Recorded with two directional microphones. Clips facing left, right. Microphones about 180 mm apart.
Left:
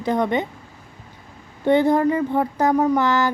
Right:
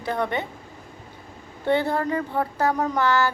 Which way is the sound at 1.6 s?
15° left (ahead or behind).